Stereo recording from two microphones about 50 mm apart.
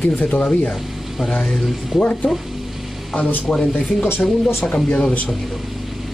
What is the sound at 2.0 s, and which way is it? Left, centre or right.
Speech, left.